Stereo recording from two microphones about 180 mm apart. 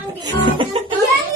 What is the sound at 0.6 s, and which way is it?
Speech, 30° right (ahead or behind).